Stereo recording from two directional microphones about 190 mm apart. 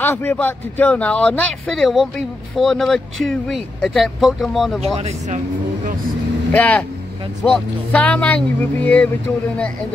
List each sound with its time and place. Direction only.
0.0 s speech: 10° left (ahead or behind)
4.9 s speech: 35° right (ahead or behind)
6.5 s speech: 10° left (ahead or behind)